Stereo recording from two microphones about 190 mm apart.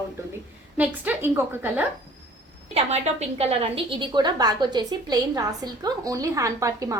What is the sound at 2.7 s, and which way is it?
A woman's voice, 35° right (ahead or behind).